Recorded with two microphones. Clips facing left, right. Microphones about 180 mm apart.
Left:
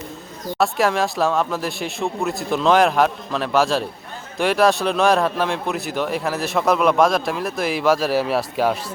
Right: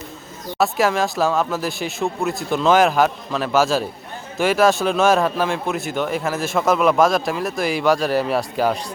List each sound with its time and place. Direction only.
0.6 s a man's voice: centre (ahead or behind)